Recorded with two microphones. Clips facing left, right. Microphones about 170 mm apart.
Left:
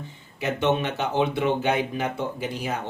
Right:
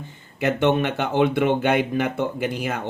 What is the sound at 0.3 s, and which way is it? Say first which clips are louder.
Speech: right 4 dB; 55° right (ahead or behind).